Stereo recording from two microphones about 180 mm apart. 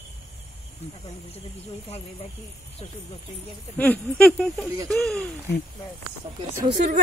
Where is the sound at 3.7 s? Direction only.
10° left (ahead or behind).